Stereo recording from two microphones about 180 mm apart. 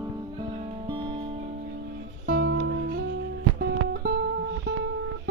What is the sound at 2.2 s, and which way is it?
Music, 65° right (ahead or behind).